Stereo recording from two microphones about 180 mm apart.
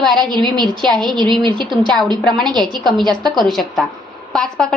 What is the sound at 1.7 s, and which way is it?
A woman's voice, centre (ahead or behind).